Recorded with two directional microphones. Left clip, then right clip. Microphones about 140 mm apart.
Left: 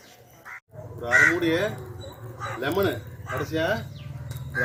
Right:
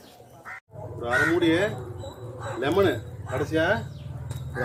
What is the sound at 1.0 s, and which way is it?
Speech, 55° right (ahead or behind).